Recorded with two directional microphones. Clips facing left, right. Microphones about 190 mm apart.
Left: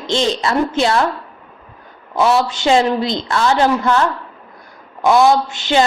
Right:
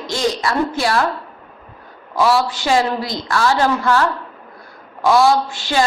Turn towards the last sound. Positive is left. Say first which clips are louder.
# left 3 dB
turn(degrees=20)  # may be behind; listen again after turning